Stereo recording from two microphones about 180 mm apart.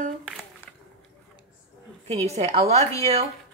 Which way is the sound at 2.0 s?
35° right (ahead or behind).